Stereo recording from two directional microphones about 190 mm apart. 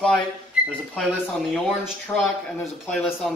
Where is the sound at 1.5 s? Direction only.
Centre (ahead or behind).